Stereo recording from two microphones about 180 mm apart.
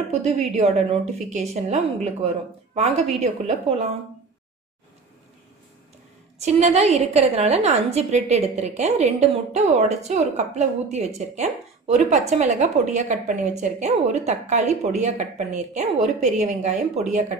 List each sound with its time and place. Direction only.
0.2 s a woman's voice: 40° right (ahead or behind)
6.3 s a woman's voice: 40° right (ahead or behind)